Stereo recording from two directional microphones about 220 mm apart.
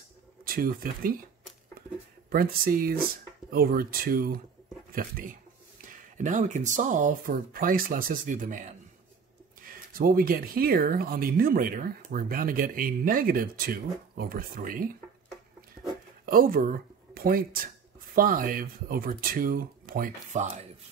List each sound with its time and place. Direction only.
0.5 s speech: 40° right (ahead or behind)
2.2 s speech: 40° right (ahead or behind)
16.3 s speech: 40° right (ahead or behind)